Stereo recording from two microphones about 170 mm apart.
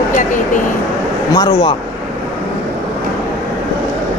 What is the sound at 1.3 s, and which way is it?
Speech, 25° left (ahead or behind).